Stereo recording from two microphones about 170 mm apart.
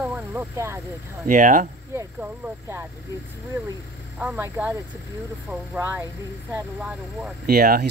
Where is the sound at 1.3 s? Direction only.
50° right (ahead or behind).